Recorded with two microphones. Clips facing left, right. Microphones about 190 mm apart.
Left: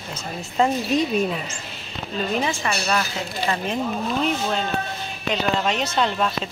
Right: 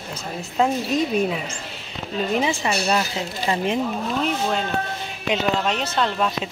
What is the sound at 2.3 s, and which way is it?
Speech, 15° right (ahead or behind).